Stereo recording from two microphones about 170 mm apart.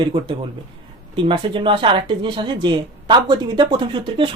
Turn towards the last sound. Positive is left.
turn(degrees=-30)  # may be behind; listen again after turning